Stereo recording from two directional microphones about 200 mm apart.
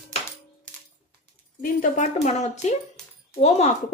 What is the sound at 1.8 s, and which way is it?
Speech, 35° left (ahead or behind).